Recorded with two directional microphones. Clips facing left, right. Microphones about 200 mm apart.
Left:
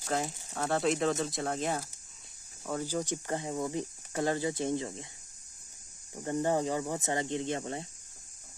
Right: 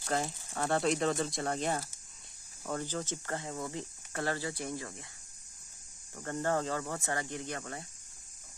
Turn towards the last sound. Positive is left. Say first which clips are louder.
# left 6 dB
turn(degrees=25)  # may be behind; listen again after turning